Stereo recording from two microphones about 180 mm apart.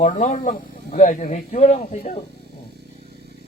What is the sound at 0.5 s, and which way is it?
Speech, 45° left (ahead or behind).